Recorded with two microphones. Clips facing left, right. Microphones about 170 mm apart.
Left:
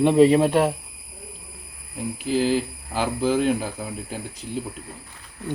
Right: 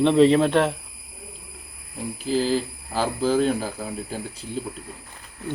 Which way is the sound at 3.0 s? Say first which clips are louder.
Even; 15° left (ahead or behind).